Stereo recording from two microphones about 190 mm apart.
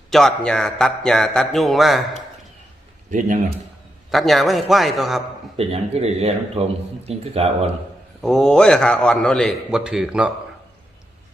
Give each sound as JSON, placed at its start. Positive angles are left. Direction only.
{"t": 0.1, "sound": "a man's voice", "side_deg": 0}
{"t": 3.1, "sound": "a man's voice", "side_deg": -40}
{"t": 4.1, "sound": "a man's voice", "side_deg": 0}
{"t": 5.5, "sound": "a man's voice", "side_deg": -30}
{"t": 8.2, "sound": "a man's voice", "side_deg": 0}